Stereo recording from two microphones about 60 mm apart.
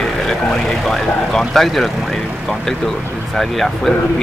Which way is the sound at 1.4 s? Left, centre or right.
Centre.